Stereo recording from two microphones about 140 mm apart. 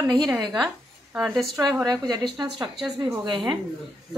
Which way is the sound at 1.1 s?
5° right (ahead or behind).